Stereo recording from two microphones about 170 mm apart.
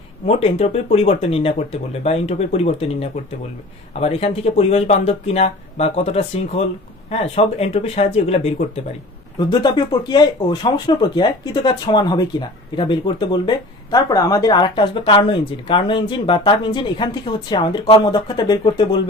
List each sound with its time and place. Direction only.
0.3 s speech: 35° left (ahead or behind)
9.5 s speech: 25° left (ahead or behind)